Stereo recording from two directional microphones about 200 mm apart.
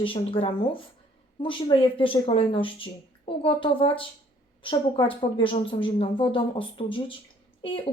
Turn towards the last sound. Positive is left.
turn(degrees=25)  # may be behind; listen again after turning